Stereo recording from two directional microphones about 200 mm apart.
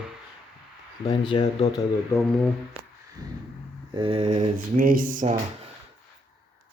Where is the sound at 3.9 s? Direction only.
25° right (ahead or behind).